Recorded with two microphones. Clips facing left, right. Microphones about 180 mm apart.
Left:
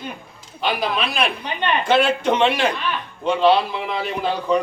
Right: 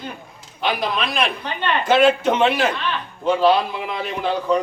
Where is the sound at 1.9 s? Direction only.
5° right (ahead or behind).